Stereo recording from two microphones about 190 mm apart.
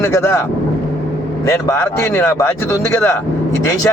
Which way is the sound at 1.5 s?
15° left (ahead or behind).